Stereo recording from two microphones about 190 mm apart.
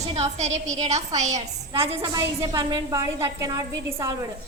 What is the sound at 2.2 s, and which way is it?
A woman's voice, 20° right (ahead or behind).